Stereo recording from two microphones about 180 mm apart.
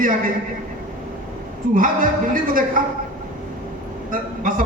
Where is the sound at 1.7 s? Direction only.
50° right (ahead or behind).